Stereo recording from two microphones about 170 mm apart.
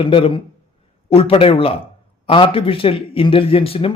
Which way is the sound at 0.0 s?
30° left (ahead or behind).